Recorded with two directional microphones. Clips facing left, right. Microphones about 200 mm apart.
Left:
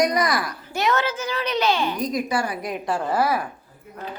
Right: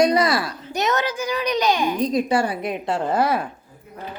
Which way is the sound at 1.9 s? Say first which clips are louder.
Right 4 dB; 30° right (ahead or behind).